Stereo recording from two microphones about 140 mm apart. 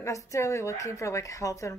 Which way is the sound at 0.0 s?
20° left (ahead or behind).